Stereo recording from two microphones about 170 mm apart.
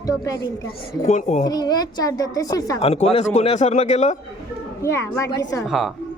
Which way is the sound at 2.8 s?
35° left (ahead or behind).